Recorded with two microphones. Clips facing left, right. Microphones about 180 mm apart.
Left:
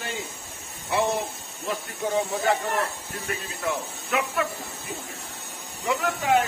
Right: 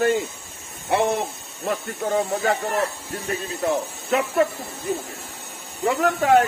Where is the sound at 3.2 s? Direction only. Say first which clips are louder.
Right 6 dB; 35° right (ahead or behind).